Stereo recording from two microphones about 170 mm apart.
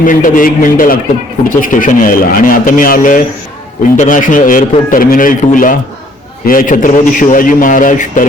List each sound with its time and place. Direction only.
0.0 s a man's voice: 50° left (ahead or behind)